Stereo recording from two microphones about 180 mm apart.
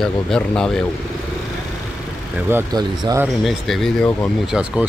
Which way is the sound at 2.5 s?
15° right (ahead or behind).